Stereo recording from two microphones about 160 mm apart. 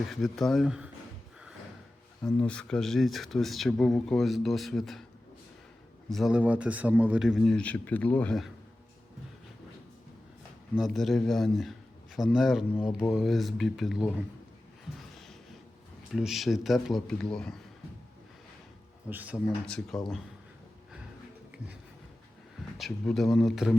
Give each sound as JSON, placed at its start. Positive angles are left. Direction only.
{"t": 0.1, "sound": "speech", "side_deg": 0}
{"t": 2.2, "sound": "speech", "side_deg": 5}
{"t": 6.1, "sound": "speech", "side_deg": 0}
{"t": 10.8, "sound": "speech", "side_deg": 0}
{"t": 12.8, "sound": "speech", "side_deg": 25}
{"t": 13.1, "sound": "speech", "side_deg": 0}
{"t": 16.1, "sound": "speech", "side_deg": 0}
{"t": 19.1, "sound": "speech", "side_deg": -10}
{"t": 19.6, "sound": "speech", "side_deg": 5}
{"t": 22.8, "sound": "speech", "side_deg": 0}